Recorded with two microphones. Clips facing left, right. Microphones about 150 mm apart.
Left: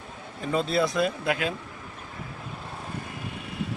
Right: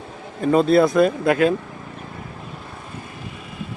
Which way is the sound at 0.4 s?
55° right (ahead or behind).